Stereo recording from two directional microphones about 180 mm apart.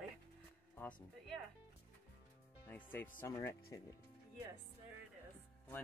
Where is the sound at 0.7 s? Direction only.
10° left (ahead or behind).